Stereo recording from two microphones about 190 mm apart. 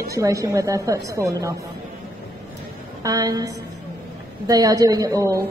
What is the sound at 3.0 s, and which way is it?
A woman's voice, 20° right (ahead or behind).